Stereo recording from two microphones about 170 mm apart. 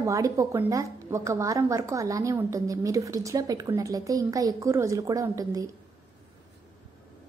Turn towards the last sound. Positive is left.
turn(degrees=-20)  # may be behind; listen again after turning